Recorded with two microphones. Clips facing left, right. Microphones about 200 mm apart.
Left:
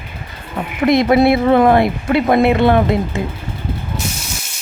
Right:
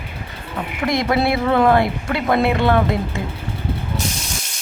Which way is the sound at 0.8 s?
20° left (ahead or behind).